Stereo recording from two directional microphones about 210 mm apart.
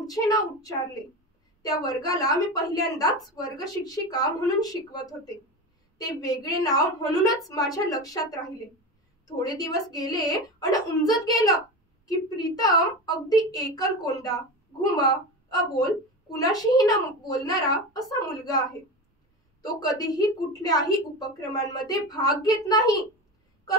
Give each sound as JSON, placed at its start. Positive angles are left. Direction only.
{"t": 0.0, "sound": "a woman's voice", "side_deg": 15}
{"t": 15.7, "sound": "a woman's voice", "side_deg": 15}